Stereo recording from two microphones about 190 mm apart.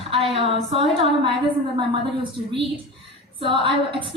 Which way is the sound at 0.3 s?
30° right (ahead or behind).